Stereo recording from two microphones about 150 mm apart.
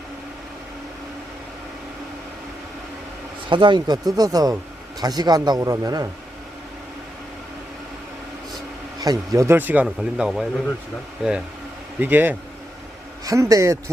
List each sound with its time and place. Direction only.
3.5 s a man's voice: 30° right (ahead or behind)
9.0 s a man's voice: 25° right (ahead or behind)